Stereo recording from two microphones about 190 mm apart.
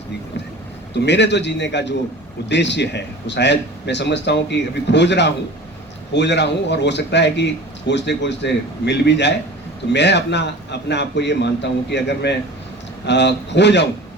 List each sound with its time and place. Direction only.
0.9 s speech: 65° left (ahead or behind)